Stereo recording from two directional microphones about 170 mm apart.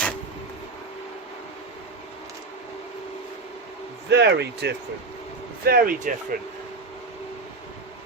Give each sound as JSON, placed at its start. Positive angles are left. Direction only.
{"t": 4.1, "sound": "speech", "side_deg": -85}
{"t": 5.6, "sound": "speech", "side_deg": -60}